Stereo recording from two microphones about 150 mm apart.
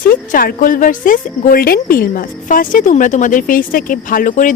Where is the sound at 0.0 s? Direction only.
70° left (ahead or behind).